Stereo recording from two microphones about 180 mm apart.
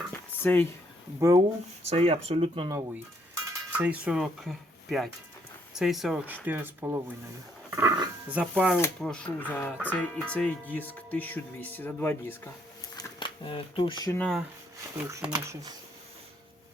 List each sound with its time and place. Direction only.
0.1 s dishes: 10° left (ahead or behind)
1.2 s speech: 20° right (ahead or behind)
1.8 s speech: 35° right (ahead or behind)
3.7 s speech: 10° right (ahead or behind)
8.7 s speech: 5° left (ahead or behind)
13.0 s speech: 25° left (ahead or behind)
14.2 s speech: centre (ahead or behind)
14.9 s speech: 10° right (ahead or behind)